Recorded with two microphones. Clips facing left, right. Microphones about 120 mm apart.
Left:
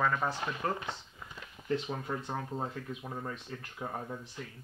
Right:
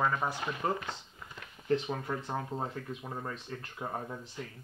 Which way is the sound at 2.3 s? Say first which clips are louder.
Right 1 dB; 15° right (ahead or behind).